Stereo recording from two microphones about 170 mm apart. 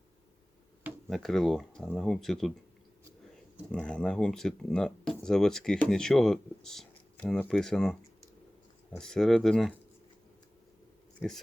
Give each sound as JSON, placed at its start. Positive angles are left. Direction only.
{"t": 1.0, "sound": "speech", "side_deg": 0}
{"t": 3.7, "sound": "speech", "side_deg": 5}
{"t": 9.0, "sound": "speech", "side_deg": 5}